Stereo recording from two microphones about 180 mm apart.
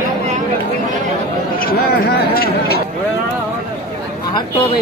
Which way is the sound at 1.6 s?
55° left (ahead or behind).